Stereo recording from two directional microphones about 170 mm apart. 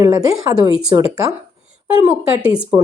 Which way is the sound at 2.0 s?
5° right (ahead or behind).